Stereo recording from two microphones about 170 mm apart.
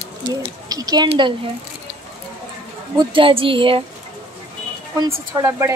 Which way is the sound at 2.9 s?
30° right (ahead or behind).